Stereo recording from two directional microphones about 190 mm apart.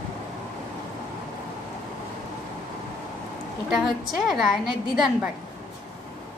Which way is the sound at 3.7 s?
Centre (ahead or behind).